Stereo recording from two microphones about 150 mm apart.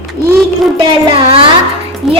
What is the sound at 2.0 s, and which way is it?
Music, 40° right (ahead or behind).